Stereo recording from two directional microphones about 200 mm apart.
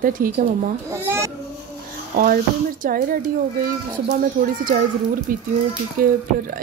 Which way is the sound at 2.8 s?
45° right (ahead or behind).